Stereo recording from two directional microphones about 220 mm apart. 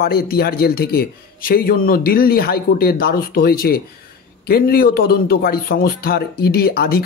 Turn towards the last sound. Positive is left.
turn(degrees=45)  # may be behind; listen again after turning